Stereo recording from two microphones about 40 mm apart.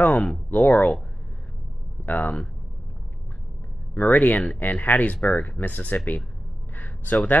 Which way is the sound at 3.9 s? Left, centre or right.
Left.